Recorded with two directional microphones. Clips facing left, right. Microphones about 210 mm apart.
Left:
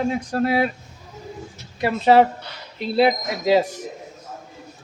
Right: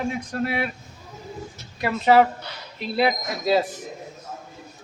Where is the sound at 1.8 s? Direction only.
30° left (ahead or behind).